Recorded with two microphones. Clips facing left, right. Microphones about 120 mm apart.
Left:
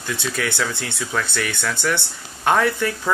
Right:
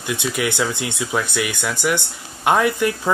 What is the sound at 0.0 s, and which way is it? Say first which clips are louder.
Speech: right 3 dB; 15° right (ahead or behind).